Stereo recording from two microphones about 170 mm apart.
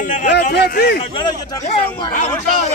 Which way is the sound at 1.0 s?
30° left (ahead or behind).